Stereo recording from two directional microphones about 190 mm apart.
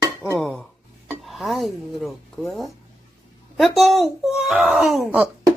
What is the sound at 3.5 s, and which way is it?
Speech, centre (ahead or behind).